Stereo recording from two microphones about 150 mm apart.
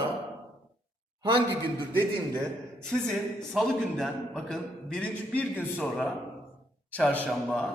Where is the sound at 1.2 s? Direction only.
30° right (ahead or behind).